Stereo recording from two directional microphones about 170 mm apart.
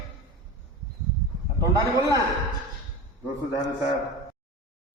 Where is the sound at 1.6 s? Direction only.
20° right (ahead or behind).